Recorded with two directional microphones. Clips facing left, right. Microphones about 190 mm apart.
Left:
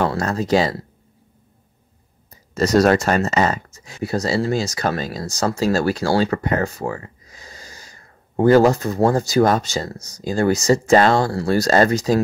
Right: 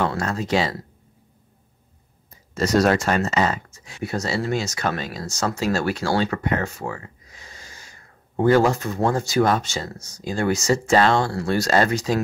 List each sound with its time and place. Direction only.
0.0 s speech: 40° left (ahead or behind)
2.5 s speech: 40° left (ahead or behind)